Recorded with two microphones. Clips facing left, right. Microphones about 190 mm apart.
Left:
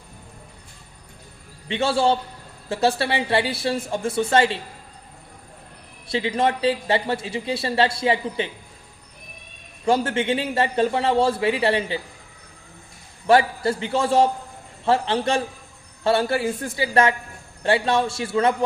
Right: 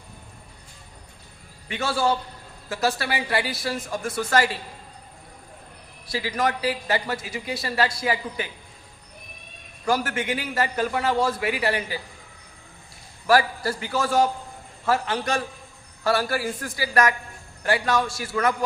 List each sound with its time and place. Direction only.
1.6 s a man's voice: 25° left (ahead or behind)
6.1 s a man's voice: 25° left (ahead or behind)
9.8 s a man's voice: 25° left (ahead or behind)
13.2 s a man's voice: 25° left (ahead or behind)